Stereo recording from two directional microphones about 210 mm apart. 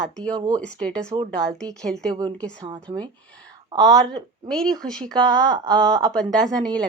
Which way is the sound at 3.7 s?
20° right (ahead or behind).